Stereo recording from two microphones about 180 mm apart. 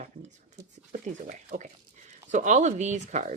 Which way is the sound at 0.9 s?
45° right (ahead or behind).